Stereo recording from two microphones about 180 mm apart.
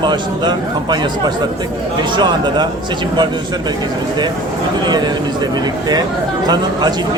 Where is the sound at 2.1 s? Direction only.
25° right (ahead or behind).